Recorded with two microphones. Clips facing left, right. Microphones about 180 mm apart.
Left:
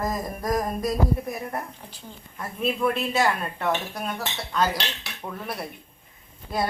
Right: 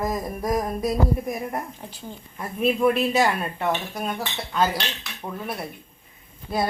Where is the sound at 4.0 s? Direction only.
5° right (ahead or behind).